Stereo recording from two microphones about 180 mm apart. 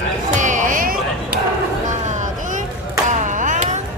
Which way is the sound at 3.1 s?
45° right (ahead or behind).